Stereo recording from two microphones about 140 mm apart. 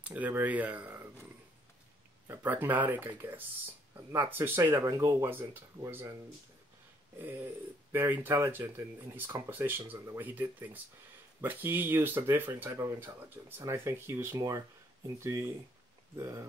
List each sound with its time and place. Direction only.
0.0 s speech: 10° right (ahead or behind)
2.2 s speech: 15° right (ahead or behind)
7.2 s speech: 15° right (ahead or behind)